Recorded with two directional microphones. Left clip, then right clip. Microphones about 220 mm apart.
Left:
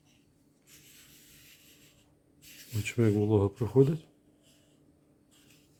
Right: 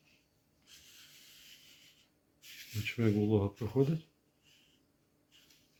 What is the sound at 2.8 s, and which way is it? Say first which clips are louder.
Speech: left 5 dB; 55° left (ahead or behind).